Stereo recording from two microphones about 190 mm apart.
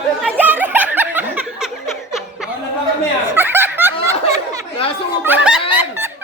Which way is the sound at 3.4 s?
10° right (ahead or behind).